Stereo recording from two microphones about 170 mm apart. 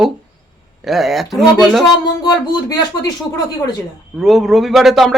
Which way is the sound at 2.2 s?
25° left (ahead or behind).